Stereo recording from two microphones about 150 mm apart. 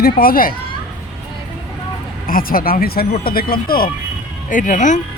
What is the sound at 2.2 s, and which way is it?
Speech, 70° left (ahead or behind).